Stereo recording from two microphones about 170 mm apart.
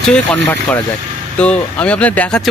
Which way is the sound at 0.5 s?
15° left (ahead or behind).